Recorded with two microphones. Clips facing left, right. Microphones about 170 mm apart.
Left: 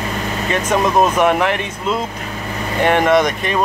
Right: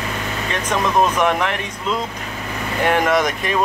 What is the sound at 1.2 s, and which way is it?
Speech, 5° left (ahead or behind).